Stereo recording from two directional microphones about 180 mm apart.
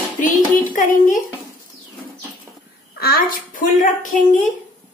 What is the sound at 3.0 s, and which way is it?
A woman's voice, 55° left (ahead or behind).